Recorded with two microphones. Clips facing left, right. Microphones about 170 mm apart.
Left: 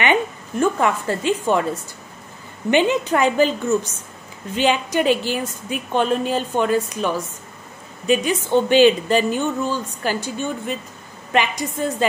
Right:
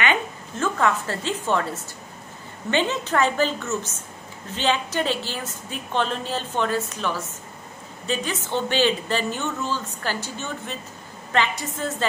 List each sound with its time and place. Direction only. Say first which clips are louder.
0.0 s a woman's voice: left 5 dB; 15° left (ahead or behind)